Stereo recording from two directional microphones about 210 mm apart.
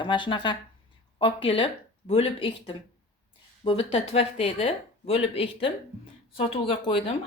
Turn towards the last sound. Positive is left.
turn(degrees=25)  # may be behind; listen again after turning